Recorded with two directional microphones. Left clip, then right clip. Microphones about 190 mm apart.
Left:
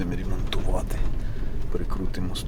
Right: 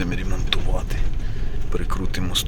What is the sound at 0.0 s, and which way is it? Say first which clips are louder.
Speech: right 4 dB; 5° left (ahead or behind).